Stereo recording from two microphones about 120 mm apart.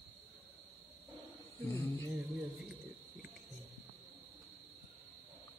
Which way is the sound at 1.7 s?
25° left (ahead or behind).